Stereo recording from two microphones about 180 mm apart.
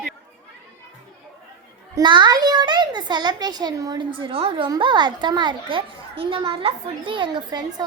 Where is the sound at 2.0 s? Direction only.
25° right (ahead or behind).